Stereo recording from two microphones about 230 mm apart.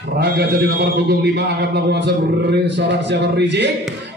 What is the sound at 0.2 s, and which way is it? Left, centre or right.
A man's voice, right.